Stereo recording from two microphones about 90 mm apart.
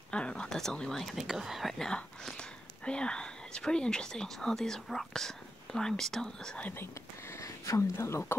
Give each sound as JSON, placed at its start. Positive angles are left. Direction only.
{"t": 0.1, "sound": "speech", "side_deg": 10}
{"t": 6.7, "sound": "speech", "side_deg": 25}